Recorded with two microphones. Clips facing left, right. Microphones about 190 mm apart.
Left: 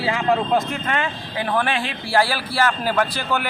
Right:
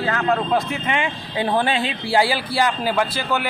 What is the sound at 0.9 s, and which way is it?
Speech, 10° right (ahead or behind).